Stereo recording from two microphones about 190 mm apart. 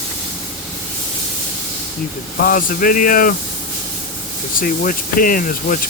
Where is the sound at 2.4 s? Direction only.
45° left (ahead or behind).